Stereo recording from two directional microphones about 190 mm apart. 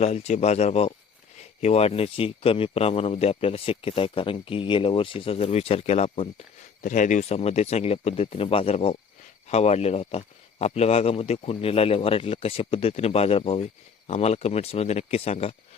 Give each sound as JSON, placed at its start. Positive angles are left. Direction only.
{"t": 0.0, "sound": "a man's voice", "side_deg": 35}